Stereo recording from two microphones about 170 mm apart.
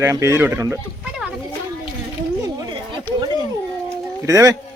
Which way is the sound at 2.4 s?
25° right (ahead or behind).